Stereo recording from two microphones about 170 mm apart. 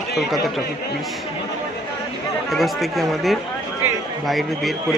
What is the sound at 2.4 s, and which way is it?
A man's voice, centre (ahead or behind).